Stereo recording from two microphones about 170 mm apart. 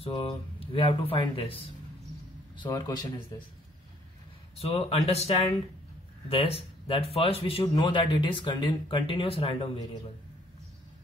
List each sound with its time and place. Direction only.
0.0 s speech: 30° left (ahead or behind)
4.6 s speech: 35° left (ahead or behind)